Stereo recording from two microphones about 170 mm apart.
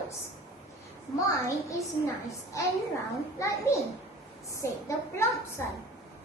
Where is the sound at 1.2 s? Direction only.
20° left (ahead or behind).